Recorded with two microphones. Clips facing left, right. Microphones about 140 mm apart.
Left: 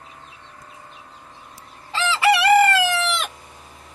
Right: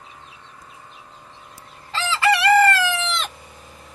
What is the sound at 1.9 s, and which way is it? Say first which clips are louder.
Chicken: left 2 dB; 15° left (ahead or behind).